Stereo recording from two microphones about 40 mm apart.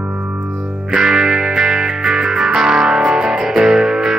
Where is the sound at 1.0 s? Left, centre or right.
Centre.